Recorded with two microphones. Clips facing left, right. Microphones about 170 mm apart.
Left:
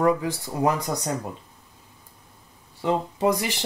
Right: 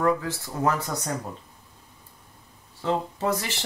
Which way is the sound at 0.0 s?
15° left (ahead or behind).